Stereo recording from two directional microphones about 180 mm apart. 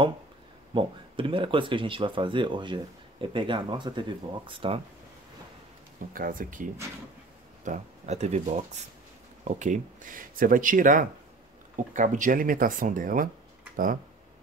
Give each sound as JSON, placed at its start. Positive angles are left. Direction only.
{"t": 0.7, "sound": "speech", "side_deg": -30}
{"t": 6.1, "sound": "speech", "side_deg": -50}